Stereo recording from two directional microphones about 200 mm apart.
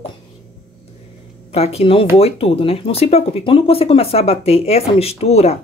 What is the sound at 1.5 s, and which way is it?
A woman's voice, 30° left (ahead or behind).